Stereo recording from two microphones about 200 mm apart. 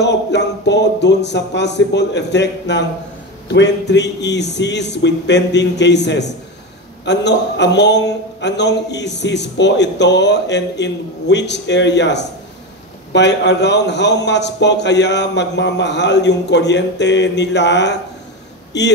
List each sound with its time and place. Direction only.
0.0 s a man's voice: 60° left (ahead or behind)